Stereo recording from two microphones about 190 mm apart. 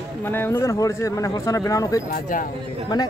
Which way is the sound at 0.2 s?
10° left (ahead or behind).